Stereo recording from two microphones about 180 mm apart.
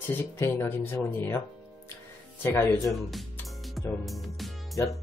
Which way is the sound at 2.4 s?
10° left (ahead or behind).